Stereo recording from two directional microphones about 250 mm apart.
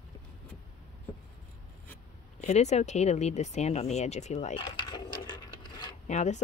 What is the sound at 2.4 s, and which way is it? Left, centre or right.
Speech, left.